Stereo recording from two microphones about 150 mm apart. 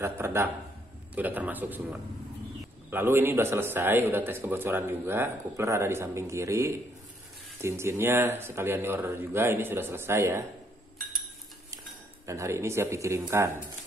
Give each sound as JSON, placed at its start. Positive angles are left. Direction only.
{"t": 0.0, "sound": "a man's voice", "side_deg": -15}
{"t": 12.3, "sound": "speech", "side_deg": -20}